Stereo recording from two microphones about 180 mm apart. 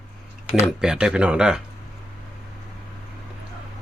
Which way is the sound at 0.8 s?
5° right (ahead or behind).